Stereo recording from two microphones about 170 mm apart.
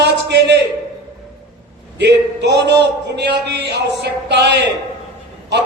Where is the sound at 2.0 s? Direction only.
80° right.